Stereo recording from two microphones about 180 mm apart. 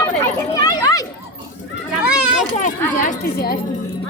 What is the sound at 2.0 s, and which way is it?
Children playing, 5° right (ahead or behind).